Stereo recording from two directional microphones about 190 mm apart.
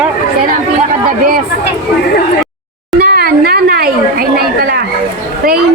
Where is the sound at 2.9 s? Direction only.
55° right (ahead or behind).